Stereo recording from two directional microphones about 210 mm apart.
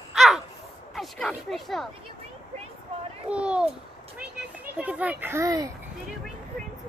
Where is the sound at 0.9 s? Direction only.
Centre (ahead or behind).